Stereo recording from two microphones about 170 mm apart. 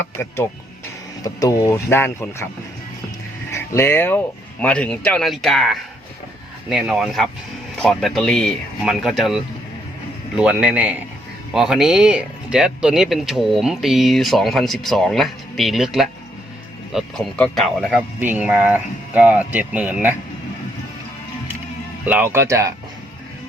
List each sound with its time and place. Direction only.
0.0 s speech: 15° left (ahead or behind)
3.5 s speech: 15° left (ahead or behind); by 20.1 s 10° right (ahead or behind)
22.0 s speech: 10° right (ahead or behind)